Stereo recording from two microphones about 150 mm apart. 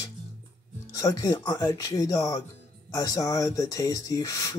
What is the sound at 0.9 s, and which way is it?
Speech, 20° left (ahead or behind).